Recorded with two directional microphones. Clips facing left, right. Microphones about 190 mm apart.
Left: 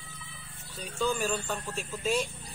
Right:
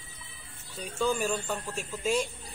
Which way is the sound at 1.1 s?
10° right (ahead or behind).